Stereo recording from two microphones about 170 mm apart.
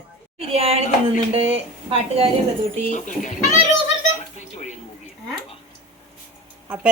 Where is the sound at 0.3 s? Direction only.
35° right (ahead or behind).